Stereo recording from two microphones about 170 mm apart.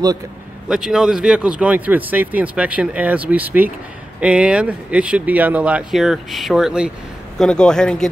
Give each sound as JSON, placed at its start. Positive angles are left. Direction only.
{"t": 0.7, "sound": "speech", "side_deg": -5}